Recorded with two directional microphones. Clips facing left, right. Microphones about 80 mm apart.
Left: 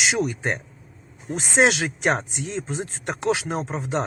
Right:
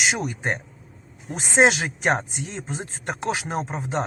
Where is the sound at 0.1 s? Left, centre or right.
Right.